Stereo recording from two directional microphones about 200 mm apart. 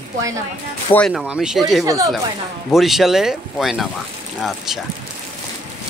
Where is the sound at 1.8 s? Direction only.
15° right (ahead or behind).